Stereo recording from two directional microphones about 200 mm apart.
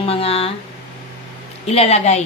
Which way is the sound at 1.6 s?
30° left (ahead or behind).